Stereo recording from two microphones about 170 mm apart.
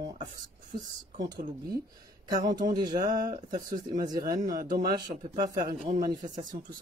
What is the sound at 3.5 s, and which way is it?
Speech, 50° right (ahead or behind).